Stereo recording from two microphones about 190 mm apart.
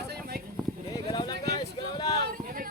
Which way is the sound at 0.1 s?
55° right (ahead or behind).